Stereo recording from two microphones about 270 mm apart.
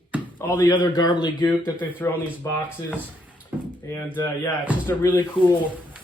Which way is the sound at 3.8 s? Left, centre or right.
Centre.